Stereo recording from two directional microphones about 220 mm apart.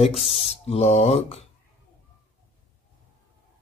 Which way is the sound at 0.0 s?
25° left (ahead or behind).